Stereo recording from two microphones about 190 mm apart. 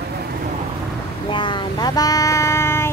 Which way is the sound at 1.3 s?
25° left (ahead or behind).